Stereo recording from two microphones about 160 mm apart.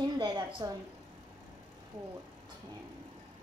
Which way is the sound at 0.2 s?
30° right (ahead or behind).